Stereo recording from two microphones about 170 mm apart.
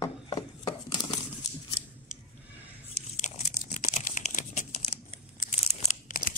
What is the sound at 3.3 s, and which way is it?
Tearing, 40° left (ahead or behind).